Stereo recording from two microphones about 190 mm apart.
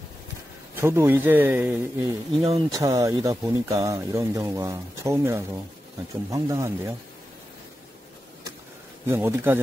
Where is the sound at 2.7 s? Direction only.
20° right (ahead or behind).